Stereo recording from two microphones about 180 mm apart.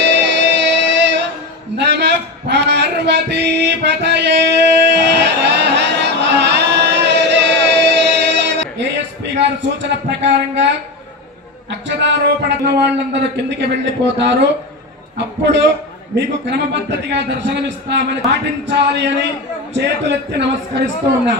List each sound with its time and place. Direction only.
0.0 s music: 75° right (ahead or behind)
1.7 s a sound: 70° right (ahead or behind)
11.7 s a man's voice: 75° right (ahead or behind)
17.1 s a man's voice: 75° right (ahead or behind)